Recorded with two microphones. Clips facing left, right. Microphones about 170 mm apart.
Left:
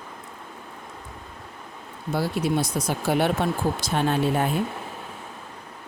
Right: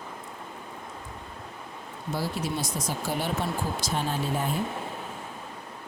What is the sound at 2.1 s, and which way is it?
Speech, 60° left (ahead or behind).